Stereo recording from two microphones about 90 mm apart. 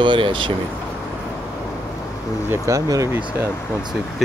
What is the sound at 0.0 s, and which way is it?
Speech, 65° right (ahead or behind).